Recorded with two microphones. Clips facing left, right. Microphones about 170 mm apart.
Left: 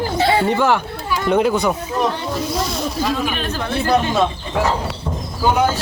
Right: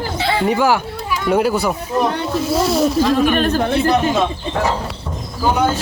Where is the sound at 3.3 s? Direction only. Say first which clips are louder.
Right 8 dB; 50° right (ahead or behind).